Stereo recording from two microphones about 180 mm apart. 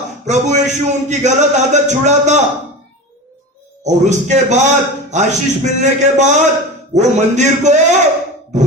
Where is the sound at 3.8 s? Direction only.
40° right (ahead or behind).